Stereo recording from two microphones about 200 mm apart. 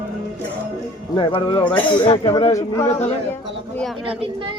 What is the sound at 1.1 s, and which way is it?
Speech, 25° left (ahead or behind).